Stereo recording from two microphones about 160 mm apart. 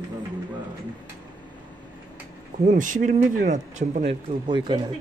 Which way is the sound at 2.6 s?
55° right (ahead or behind).